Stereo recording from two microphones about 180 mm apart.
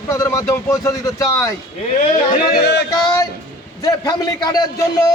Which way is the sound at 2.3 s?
60° left (ahead or behind).